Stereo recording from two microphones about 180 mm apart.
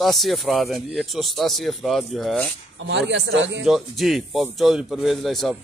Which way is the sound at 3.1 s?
80° right.